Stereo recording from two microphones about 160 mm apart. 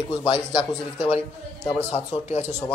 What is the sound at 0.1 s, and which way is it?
Speech, 30° left (ahead or behind).